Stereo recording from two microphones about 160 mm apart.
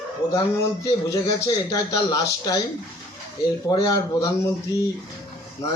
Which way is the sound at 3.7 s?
25° left (ahead or behind).